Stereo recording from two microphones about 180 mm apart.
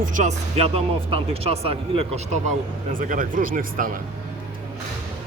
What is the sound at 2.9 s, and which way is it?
Speech, 50° right (ahead or behind).